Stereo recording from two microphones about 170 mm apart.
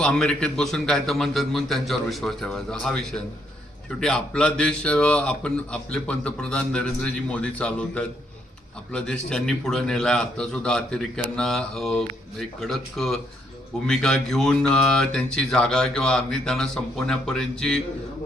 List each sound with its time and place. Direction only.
0.0 s a man's voice: 5° left (ahead or behind)